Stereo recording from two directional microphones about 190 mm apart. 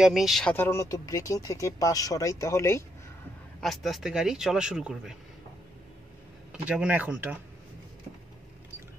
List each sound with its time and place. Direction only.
0.0 s speech: centre (ahead or behind); by 2.8 s 15° left (ahead or behind)
3.6 s speech: centre (ahead or behind)
6.5 s speech: 5° right (ahead or behind)